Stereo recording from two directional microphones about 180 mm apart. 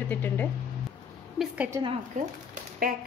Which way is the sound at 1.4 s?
Centre (ahead or behind).